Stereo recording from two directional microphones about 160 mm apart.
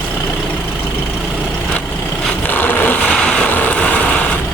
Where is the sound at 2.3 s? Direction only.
10° left (ahead or behind).